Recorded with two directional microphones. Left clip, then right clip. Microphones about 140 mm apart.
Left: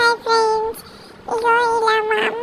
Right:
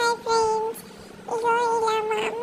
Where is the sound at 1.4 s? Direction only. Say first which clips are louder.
Left 6 dB; 20° left (ahead or behind).